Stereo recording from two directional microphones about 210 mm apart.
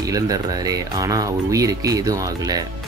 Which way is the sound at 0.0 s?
15° right (ahead or behind).